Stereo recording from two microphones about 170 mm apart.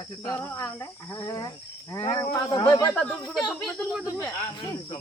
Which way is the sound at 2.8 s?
5° left (ahead or behind).